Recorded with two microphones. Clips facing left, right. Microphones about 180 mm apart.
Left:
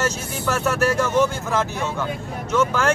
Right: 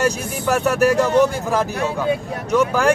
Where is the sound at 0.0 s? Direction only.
15° right (ahead or behind).